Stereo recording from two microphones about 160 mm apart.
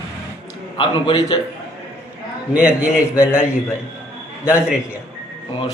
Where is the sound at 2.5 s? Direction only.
5° right (ahead or behind).